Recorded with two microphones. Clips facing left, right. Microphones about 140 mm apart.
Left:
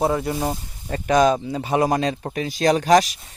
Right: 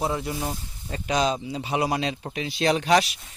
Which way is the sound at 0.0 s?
50° left (ahead or behind).